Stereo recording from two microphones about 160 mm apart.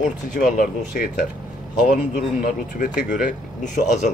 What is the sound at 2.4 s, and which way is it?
Speech, 55° left (ahead or behind).